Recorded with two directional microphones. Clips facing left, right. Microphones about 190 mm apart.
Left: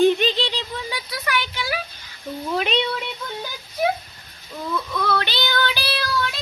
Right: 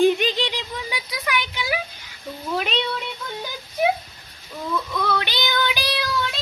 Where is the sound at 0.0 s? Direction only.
15° right (ahead or behind).